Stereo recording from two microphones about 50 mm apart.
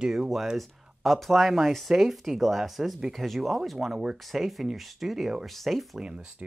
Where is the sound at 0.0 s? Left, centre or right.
Centre.